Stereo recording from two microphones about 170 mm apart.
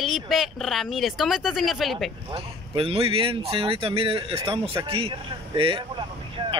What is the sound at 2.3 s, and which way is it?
Speech, 35° right (ahead or behind).